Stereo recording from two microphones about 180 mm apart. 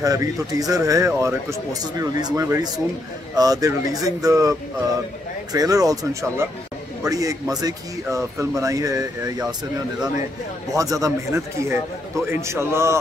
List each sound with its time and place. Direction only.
0.0 s speech: 20° right (ahead or behind)
10.7 s speech: 20° right (ahead or behind)